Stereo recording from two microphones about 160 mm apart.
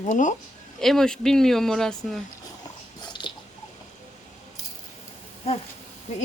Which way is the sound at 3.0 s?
30° left (ahead or behind).